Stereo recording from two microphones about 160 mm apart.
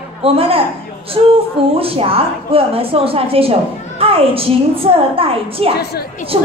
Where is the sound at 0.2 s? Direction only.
35° right (ahead or behind).